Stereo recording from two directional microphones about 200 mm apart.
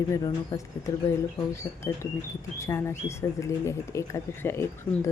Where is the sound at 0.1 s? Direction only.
15° left (ahead or behind).